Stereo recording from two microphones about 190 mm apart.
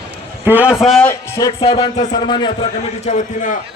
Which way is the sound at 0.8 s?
Centre (ahead or behind).